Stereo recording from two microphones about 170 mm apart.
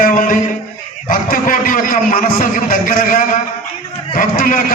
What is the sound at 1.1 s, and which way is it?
A man's voice, 55° left (ahead or behind).